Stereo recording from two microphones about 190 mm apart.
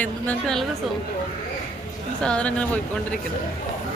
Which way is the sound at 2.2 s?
5° left (ahead or behind).